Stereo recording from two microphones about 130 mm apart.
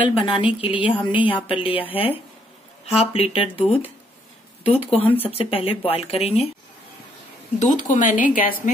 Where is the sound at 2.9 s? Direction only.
50° left (ahead or behind).